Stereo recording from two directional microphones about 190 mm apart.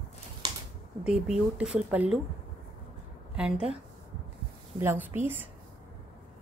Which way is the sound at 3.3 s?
5° right (ahead or behind).